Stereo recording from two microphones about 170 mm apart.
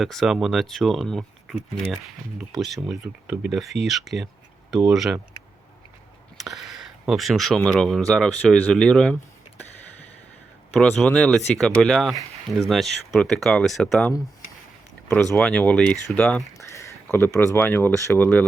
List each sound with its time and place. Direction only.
0.0 s speech: centre (ahead or behind)
6.3 s a sound: centre (ahead or behind)
7.0 s speech: centre (ahead or behind)
10.8 s speech: 5° left (ahead or behind)
15.0 s speech: 15° left (ahead or behind)